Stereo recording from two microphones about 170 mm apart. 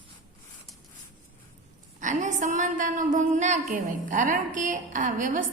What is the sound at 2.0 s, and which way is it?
A woman's voice, 45° right (ahead or behind).